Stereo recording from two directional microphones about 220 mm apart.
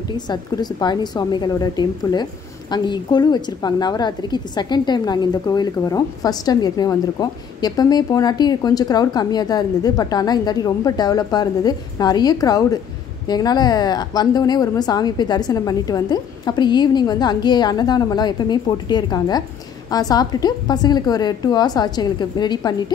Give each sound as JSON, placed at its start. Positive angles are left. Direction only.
{"t": 0.3, "sound": "a woman's voice", "side_deg": 20}